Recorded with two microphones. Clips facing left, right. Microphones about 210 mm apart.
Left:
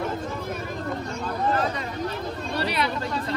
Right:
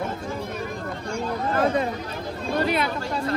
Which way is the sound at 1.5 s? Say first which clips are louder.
Right 7 dB; 50° right (ahead or behind).